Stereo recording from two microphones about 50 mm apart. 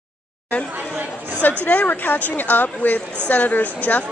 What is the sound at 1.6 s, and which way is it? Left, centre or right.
A woman's voice, left.